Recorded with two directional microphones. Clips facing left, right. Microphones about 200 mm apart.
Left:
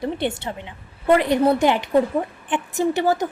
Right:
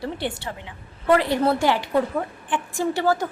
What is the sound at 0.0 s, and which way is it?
A woman's voice, 20° left (ahead or behind).